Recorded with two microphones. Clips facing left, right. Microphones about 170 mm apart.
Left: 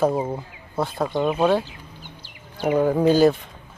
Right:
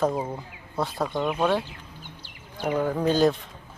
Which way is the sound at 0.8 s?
Centre (ahead or behind).